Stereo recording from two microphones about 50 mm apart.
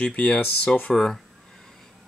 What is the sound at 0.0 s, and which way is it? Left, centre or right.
Speech, left.